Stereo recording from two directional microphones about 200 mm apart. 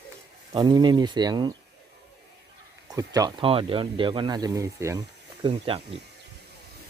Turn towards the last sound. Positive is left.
turn(degrees=-30)  # may be behind; listen again after turning